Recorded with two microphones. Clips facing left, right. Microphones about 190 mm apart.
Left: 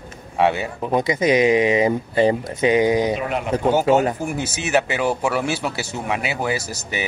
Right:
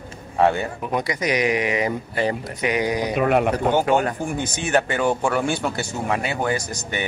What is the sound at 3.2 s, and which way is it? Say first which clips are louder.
Speech: right 6 dB; 55° right (ahead or behind).